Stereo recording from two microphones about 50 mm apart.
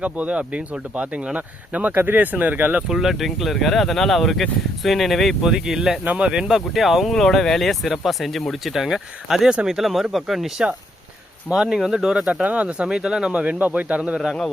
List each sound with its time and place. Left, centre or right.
0.0 s speech: right
2.9 s speech: centre
5.4 s speech: centre
6.1 s speech: right
6.5 s speech: centre
8.6 s speech: centre
11.8 s speech: centre
12.2 s speech: right
12.9 s speech: centre